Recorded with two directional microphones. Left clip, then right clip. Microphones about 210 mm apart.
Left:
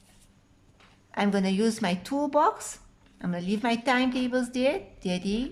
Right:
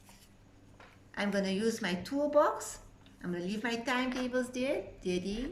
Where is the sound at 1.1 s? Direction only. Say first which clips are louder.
Left 6 dB; 40° left (ahead or behind).